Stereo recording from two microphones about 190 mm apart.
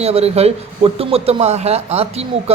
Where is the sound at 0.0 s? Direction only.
35° right (ahead or behind).